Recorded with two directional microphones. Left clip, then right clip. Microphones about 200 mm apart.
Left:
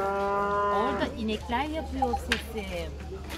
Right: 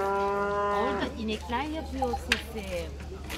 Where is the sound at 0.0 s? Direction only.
45° right (ahead or behind).